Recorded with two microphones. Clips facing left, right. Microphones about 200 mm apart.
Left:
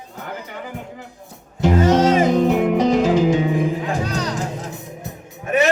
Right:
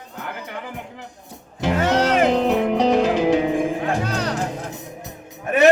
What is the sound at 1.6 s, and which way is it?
Music, 60° right (ahead or behind).